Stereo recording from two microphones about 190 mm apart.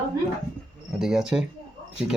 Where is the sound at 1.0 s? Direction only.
5° right (ahead or behind).